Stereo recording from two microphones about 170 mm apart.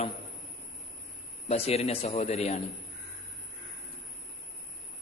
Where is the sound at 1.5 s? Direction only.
35° left (ahead or behind).